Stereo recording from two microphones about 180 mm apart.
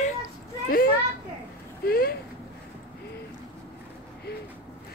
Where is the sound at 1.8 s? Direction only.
55° left (ahead or behind).